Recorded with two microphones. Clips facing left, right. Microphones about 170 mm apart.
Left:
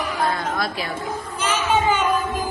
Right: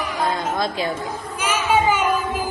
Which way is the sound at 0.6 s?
25° right (ahead or behind).